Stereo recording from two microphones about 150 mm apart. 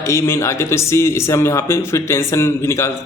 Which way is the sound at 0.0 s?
20° left (ahead or behind).